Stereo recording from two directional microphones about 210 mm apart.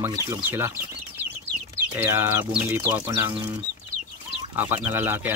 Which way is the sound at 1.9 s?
10° right (ahead or behind).